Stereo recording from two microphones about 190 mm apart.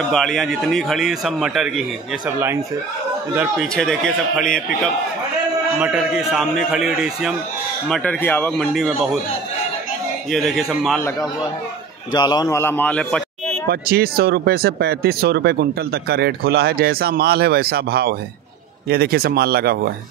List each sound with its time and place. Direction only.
0.1 s a man's voice: centre (ahead or behind)
3.3 s a man's voice: centre (ahead or behind)
5.8 s a man's voice: 5° right (ahead or behind)
10.3 s a man's voice: centre (ahead or behind)
12.1 s a man's voice: 20° left (ahead or behind); by 13.6 s 5° left (ahead or behind)
13.7 s speech: 55° right (ahead or behind)